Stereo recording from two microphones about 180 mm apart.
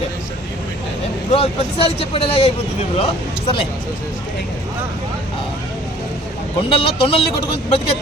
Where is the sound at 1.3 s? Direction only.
35° left (ahead or behind).